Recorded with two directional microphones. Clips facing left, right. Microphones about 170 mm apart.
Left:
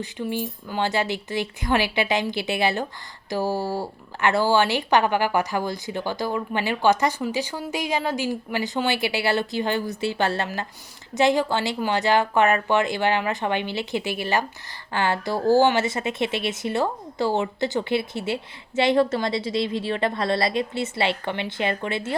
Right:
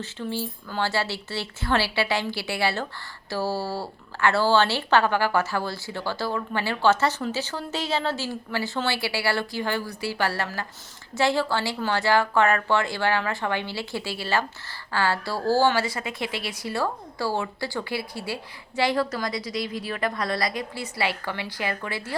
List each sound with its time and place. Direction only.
0.0 s a woman's voice: 15° left (ahead or behind)